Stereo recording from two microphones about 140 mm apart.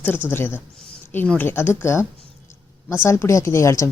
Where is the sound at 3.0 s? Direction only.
20° left (ahead or behind).